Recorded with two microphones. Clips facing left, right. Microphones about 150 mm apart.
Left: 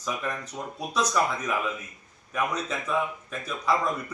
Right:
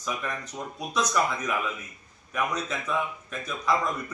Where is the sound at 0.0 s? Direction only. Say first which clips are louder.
Left 1 dB; centre (ahead or behind).